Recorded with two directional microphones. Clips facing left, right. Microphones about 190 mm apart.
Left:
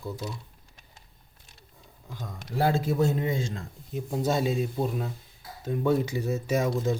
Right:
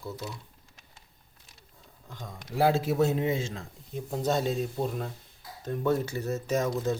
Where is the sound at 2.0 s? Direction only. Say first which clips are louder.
Left 3 dB; 5° left (ahead or behind).